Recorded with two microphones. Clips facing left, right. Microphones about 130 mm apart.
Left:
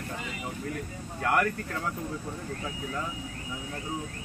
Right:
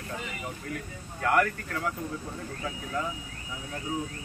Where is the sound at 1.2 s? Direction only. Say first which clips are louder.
Right 1 dB; 15° left (ahead or behind).